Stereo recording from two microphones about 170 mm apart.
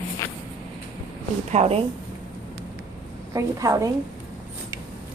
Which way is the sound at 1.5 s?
35° right (ahead or behind).